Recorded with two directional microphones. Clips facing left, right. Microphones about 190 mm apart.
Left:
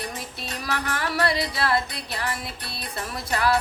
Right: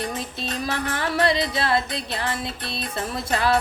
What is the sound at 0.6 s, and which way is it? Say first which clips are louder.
Music: right 1 dB; 25° right (ahead or behind).